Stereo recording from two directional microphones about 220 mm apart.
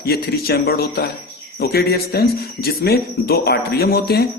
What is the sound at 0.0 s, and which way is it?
A man's voice, 45° left (ahead or behind).